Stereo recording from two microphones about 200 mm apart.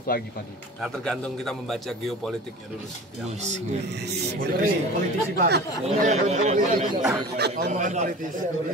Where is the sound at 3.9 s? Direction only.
55° right (ahead or behind).